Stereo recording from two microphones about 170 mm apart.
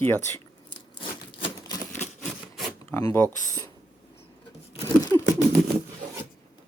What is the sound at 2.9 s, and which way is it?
Speech, 15° left (ahead or behind).